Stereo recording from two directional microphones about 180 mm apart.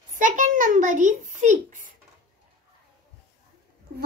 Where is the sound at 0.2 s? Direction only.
45° right (ahead or behind).